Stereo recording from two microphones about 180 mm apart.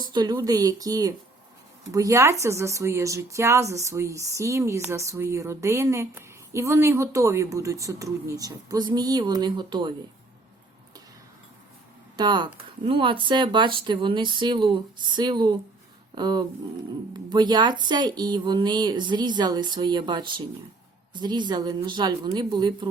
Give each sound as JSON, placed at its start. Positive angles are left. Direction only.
{"t": 0.0, "sound": "speech", "side_deg": -25}
{"t": 12.1, "sound": "speech", "side_deg": -25}